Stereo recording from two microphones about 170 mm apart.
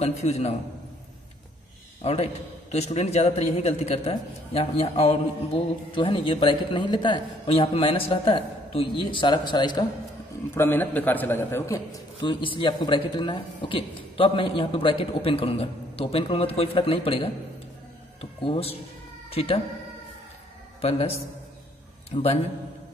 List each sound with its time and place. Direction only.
0.0 s a man's voice: 40° left (ahead or behind)
2.0 s a man's voice: 35° left (ahead or behind)
10.5 s a man's voice: 15° left (ahead or behind)
12.2 s a man's voice: 30° left (ahead or behind)
22.1 s a man's voice: 35° left (ahead or behind)